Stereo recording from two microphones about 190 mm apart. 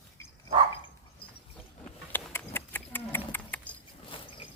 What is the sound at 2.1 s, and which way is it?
Livestock, 10° left (ahead or behind).